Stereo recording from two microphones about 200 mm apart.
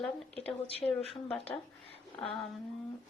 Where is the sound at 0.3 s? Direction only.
30° left (ahead or behind).